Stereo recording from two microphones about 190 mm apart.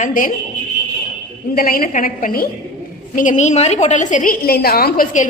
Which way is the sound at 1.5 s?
50° left (ahead or behind).